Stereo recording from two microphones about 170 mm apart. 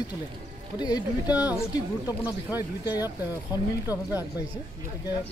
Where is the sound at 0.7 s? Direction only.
25° left (ahead or behind).